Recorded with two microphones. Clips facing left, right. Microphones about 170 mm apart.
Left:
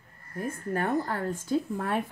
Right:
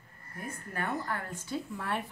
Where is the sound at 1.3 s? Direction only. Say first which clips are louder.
Left 8 dB; 50° left (ahead or behind).